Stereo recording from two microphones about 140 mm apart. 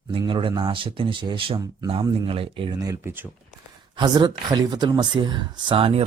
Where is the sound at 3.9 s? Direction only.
30° right (ahead or behind).